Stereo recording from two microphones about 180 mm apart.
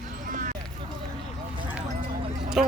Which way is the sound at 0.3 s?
50° right (ahead or behind).